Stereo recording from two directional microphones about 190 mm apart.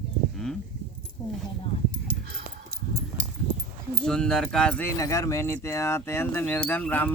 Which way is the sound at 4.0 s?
5° left (ahead or behind).